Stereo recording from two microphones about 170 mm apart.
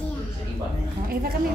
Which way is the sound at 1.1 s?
60° right (ahead or behind).